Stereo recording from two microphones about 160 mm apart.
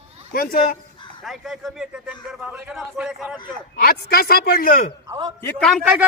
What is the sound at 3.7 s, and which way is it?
A man's voice, 65° left (ahead or behind).